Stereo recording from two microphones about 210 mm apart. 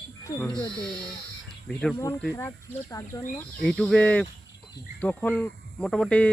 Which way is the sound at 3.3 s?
5° left (ahead or behind).